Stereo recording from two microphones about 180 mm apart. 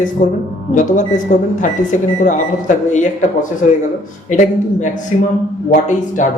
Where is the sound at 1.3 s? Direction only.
45° left (ahead or behind).